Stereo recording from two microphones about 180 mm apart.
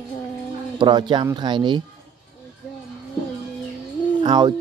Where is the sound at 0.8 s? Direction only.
25° right (ahead or behind).